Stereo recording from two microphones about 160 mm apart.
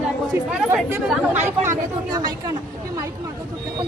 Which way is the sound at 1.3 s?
15° right (ahead or behind).